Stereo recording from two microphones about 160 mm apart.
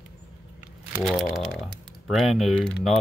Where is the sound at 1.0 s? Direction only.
Centre (ahead or behind).